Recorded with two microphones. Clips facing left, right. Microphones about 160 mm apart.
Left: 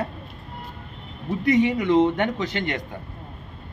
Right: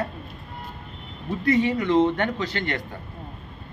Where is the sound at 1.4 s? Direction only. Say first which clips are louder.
Left 2 dB; 20° left (ahead or behind).